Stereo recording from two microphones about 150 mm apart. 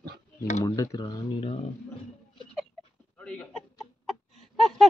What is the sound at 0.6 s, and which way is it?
Speech, 25° left (ahead or behind).